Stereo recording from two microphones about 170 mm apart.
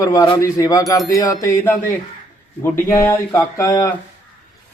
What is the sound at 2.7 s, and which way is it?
A man's voice, 15° left (ahead or behind).